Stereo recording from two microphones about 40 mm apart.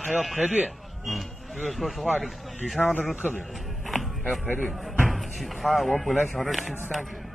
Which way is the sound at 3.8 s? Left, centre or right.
Centre.